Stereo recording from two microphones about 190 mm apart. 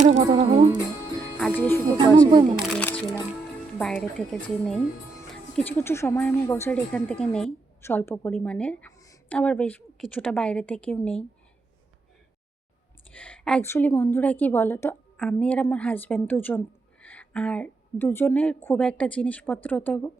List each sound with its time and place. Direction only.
0.0 s speech: 30° right (ahead or behind)
1.4 s speech: 5° left (ahead or behind)
2.6 s music: 5° left (ahead or behind)
3.8 s a woman's voice: 5° left (ahead or behind)
13.1 s a woman's voice: 5° left (ahead or behind)